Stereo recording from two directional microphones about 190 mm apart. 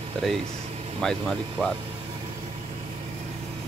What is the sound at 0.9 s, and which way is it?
Speech, centre (ahead or behind).